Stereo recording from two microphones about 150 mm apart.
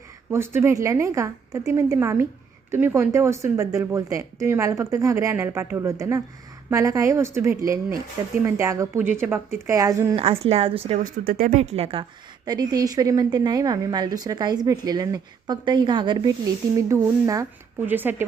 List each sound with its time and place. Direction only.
0.3 s a woman's voice: 15° right (ahead or behind)
10.2 s speech: 40° right (ahead or behind)
11.0 s speech: 70° right (ahead or behind)
11.7 s speech: 40° right (ahead or behind)
12.5 s a woman's voice: 25° right (ahead or behind)